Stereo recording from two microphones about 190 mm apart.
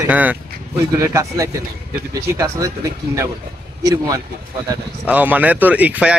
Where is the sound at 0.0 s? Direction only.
10° right (ahead or behind).